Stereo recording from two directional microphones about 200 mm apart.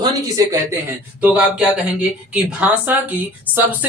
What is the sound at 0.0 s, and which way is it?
Speech, 15° right (ahead or behind).